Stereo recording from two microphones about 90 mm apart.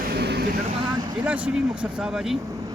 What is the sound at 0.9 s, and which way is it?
Vehicle, 50° right (ahead or behind).